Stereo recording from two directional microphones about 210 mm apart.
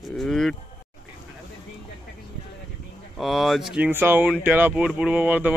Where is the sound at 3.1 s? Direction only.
Centre (ahead or behind).